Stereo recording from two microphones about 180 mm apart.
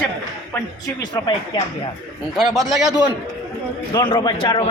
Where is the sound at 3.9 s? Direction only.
25° left (ahead or behind).